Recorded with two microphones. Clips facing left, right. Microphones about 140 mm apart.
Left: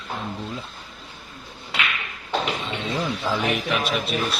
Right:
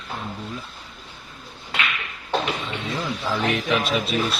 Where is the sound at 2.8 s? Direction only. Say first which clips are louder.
Left 2 dB; 20° left (ahead or behind).